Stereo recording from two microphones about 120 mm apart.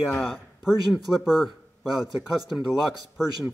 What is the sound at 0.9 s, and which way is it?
Speech, centre (ahead or behind).